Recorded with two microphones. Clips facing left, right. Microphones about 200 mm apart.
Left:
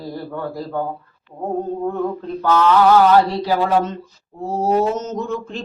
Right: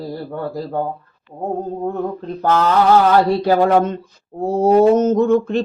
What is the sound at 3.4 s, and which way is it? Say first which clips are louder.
Mantra: right 4 dB; 55° right (ahead or behind).